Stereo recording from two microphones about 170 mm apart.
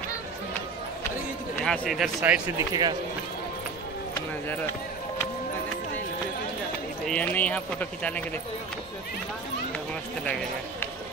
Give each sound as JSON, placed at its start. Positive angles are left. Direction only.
{"t": 1.6, "sound": "speech", "side_deg": 0}
{"t": 2.7, "sound": "speech", "side_deg": -25}
{"t": 7.1, "sound": "speech", "side_deg": 10}
{"t": 10.2, "sound": "speech", "side_deg": 10}